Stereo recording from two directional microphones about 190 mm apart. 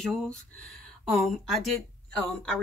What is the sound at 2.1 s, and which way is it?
Speech, 5° left (ahead or behind).